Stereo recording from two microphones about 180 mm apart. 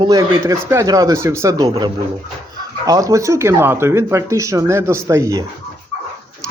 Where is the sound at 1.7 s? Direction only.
25° right (ahead or behind).